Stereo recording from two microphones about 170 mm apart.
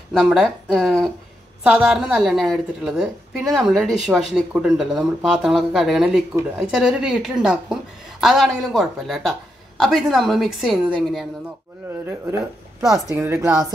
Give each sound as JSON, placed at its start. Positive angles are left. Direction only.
{"t": 0.1, "sound": "a woman's voice", "side_deg": 0}
{"t": 13.1, "sound": "a woman's voice", "side_deg": -15}